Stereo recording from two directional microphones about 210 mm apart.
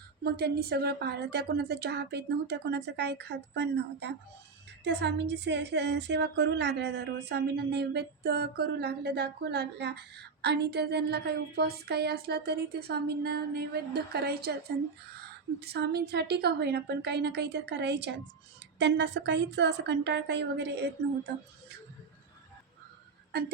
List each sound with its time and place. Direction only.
0.3 s speech: 50° right (ahead or behind)
15.6 s a woman's voice: 50° right (ahead or behind)